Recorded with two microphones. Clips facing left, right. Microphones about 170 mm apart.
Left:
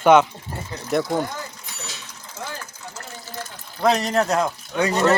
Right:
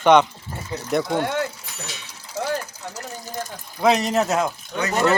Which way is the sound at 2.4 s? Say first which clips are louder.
Right 8 dB; 35° right (ahead or behind).